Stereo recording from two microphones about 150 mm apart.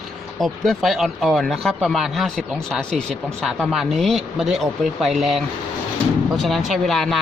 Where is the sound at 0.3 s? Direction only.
Centre (ahead or behind).